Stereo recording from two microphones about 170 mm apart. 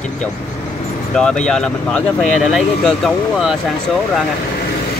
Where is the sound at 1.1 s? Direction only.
5° left (ahead or behind).